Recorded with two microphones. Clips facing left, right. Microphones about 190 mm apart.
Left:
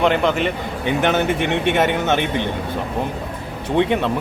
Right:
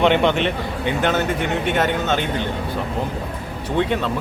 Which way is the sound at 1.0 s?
20° left (ahead or behind).